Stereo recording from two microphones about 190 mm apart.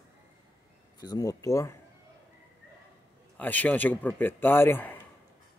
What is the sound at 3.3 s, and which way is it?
A man's voice, 10° left (ahead or behind).